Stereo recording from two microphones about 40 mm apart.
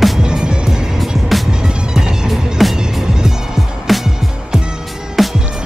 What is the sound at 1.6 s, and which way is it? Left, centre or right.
Music, centre.